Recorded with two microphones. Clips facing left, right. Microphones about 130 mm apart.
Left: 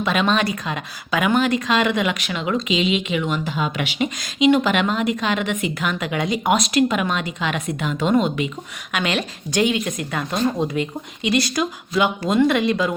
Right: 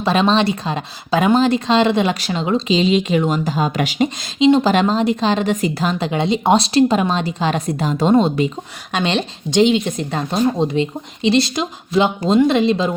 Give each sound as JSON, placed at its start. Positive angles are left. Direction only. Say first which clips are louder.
{"t": 0.0, "sound": "speech", "louder": "right 4 dB", "side_deg": -30}